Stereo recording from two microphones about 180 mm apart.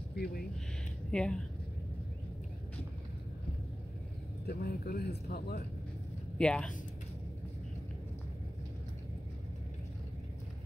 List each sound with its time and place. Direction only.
0.1 s speech: 60° left (ahead or behind)
1.1 s speech: 5° left (ahead or behind)
4.5 s speech: 55° left (ahead or behind)
6.3 s speech: 5° left (ahead or behind)